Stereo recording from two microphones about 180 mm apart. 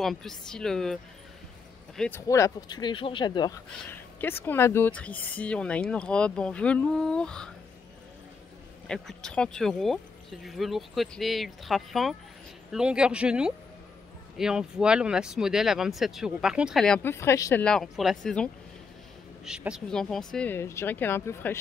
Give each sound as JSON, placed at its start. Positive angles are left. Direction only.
{"t": 0.0, "sound": "speech", "side_deg": 0}
{"t": 2.0, "sound": "speech", "side_deg": 10}
{"t": 4.2, "sound": "speech", "side_deg": 10}
{"t": 8.8, "sound": "speech", "side_deg": 5}
{"t": 17.6, "sound": "speech", "side_deg": 0}